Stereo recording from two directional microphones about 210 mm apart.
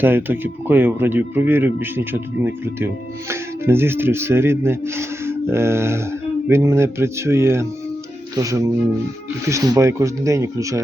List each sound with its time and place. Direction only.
0.0 s speech: 10° right (ahead or behind)